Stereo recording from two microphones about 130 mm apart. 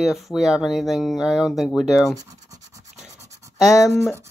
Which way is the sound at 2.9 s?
60° right (ahead or behind).